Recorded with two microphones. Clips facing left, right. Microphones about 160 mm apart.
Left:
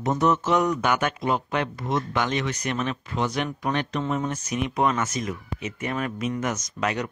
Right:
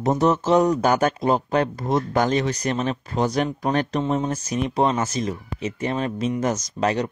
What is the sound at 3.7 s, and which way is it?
Speech, 25° right (ahead or behind).